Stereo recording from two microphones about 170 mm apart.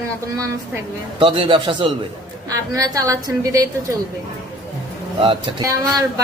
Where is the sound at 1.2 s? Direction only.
30° right (ahead or behind).